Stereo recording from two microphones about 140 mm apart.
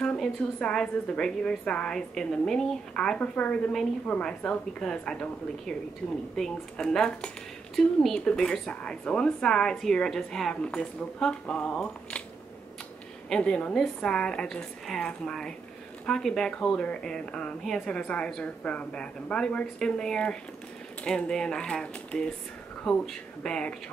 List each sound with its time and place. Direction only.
0.0 s a woman's voice: 5° left (ahead or behind)
13.3 s a woman's voice: 5° left (ahead or behind)